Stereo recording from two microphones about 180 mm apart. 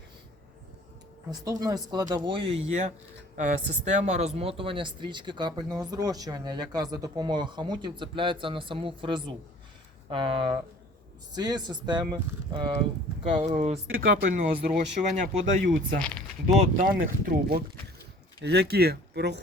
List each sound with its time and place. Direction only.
1.3 s speech: 20° right (ahead or behind)
13.4 s speech: 40° right (ahead or behind)
14.1 s speech: 50° right (ahead or behind)
16.0 s speech: 5° left (ahead or behind)
16.7 s speech: 50° right (ahead or behind)
18.4 s speech: 65° right (ahead or behind)